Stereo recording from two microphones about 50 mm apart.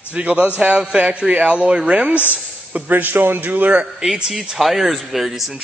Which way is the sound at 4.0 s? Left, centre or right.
Centre.